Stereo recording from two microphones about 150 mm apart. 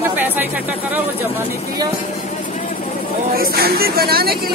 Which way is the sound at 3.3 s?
85° right.